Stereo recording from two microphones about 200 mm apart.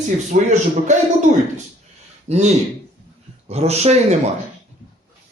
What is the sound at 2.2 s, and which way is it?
A man's voice, 35° right (ahead or behind).